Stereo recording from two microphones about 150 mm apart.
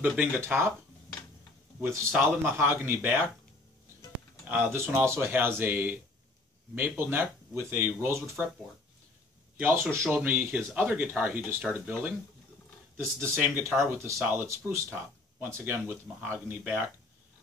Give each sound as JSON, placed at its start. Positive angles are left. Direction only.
{"t": 0.0, "sound": "speech", "side_deg": -10}
{"t": 1.8, "sound": "speech", "side_deg": -15}
{"t": 4.5, "sound": "speech", "side_deg": -15}
{"t": 9.6, "sound": "speech", "side_deg": -15}